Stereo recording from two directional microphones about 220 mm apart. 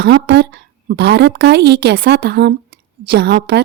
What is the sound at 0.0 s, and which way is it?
A woman's voice, 50° right (ahead or behind).